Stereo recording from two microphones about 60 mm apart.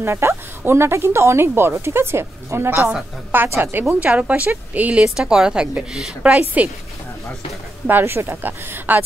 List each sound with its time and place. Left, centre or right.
0.0 s speech: right
4.0 s speech: right
5.0 s a woman's voice: centre
8.0 s speech: right